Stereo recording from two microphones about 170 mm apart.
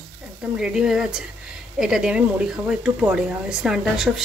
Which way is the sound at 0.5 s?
5° right (ahead or behind).